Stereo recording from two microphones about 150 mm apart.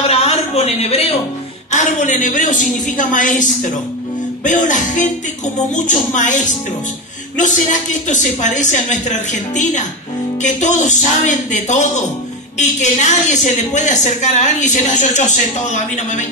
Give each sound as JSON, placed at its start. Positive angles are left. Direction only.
{"t": 0.1, "sound": "a sound", "side_deg": 45}
{"t": 1.7, "sound": "a woman's voice", "side_deg": 55}
{"t": 8.1, "sound": "a woman's voice", "side_deg": 55}